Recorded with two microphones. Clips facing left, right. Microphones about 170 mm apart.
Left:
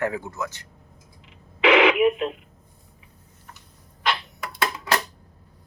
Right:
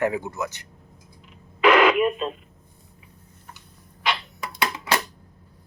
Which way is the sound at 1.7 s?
90° left.